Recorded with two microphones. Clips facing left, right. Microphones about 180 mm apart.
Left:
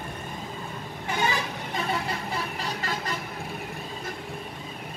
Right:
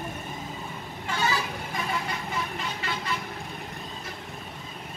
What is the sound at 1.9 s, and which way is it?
Vehicle, 35° left (ahead or behind).